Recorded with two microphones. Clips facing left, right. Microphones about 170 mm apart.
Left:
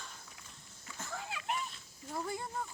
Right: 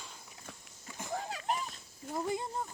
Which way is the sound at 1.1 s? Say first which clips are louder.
Right 4 dB; 40° right (ahead or behind).